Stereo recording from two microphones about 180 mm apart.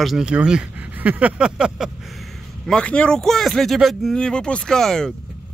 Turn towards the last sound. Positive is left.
turn(degrees=5)  # may be behind; listen again after turning